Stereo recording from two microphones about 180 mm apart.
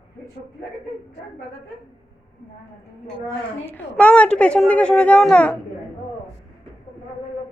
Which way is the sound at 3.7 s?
10° left (ahead or behind).